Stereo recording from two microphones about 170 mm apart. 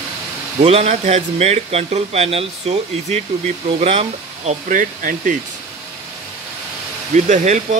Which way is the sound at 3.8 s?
35° right (ahead or behind).